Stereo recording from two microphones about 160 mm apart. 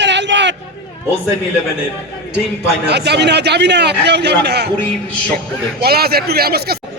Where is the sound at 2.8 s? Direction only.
90° right.